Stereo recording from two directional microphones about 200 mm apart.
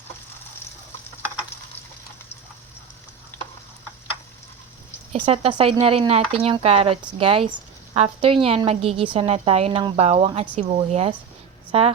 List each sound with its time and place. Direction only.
3.3 s stir: 10° left (ahead or behind)
5.1 s speech: 25° right (ahead or behind)